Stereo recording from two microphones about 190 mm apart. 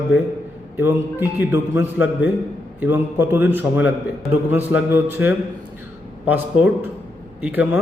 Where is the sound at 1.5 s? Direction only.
15° right (ahead or behind).